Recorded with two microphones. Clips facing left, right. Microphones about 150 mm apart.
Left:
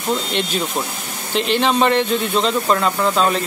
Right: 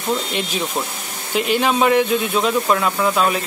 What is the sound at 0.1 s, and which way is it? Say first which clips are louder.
Speech: left 1 dB; 5° right (ahead or behind).